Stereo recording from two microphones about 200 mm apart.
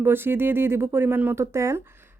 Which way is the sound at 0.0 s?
10° right (ahead or behind).